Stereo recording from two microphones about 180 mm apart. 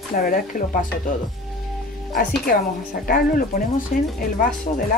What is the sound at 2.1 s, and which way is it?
A woman's voice, 50° left (ahead or behind).